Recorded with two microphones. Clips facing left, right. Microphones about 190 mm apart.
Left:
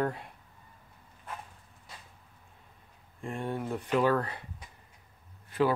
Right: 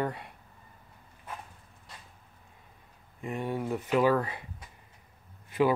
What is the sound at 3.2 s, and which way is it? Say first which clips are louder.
Speech: right 2 dB; 5° right (ahead or behind).